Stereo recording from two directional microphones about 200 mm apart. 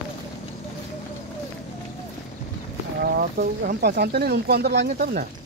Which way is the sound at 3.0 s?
50° right (ahead or behind).